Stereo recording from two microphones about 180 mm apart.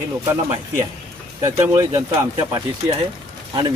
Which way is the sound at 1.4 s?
15° right (ahead or behind).